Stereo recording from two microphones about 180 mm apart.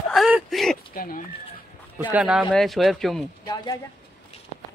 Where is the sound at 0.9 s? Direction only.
55° left (ahead or behind).